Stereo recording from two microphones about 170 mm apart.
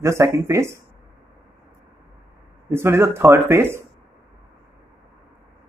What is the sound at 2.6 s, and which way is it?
A man's voice, 15° right (ahead or behind).